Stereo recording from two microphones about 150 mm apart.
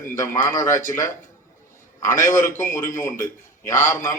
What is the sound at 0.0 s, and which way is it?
A man's voice, 20° left (ahead or behind).